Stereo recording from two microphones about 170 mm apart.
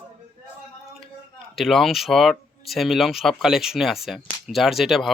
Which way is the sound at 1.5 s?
Centre (ahead or behind).